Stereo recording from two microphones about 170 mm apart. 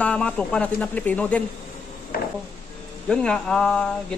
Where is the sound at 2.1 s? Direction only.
60° left (ahead or behind).